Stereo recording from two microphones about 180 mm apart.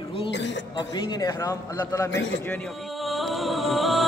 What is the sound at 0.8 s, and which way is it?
A man's voice, 25° left (ahead or behind).